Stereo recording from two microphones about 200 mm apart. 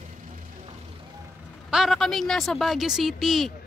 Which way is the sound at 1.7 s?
Centre (ahead or behind).